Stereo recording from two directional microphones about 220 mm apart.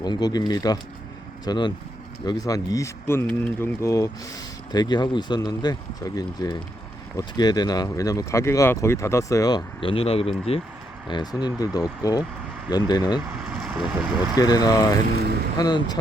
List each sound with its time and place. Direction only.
0.0 s speech: 20° left (ahead or behind)
13.5 s vehicle: centre (ahead or behind)
14.3 s speech: 15° left (ahead or behind)